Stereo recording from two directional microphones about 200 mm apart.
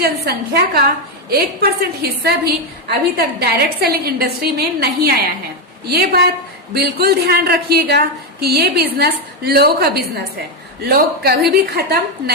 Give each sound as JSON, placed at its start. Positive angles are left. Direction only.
{"t": 0.0, "sound": "a woman's voice", "side_deg": -50}